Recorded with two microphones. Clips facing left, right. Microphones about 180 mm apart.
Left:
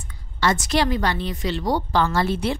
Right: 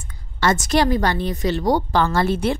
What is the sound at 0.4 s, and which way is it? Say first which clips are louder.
A woman's voice: right 3 dB; 45° right (ahead or behind).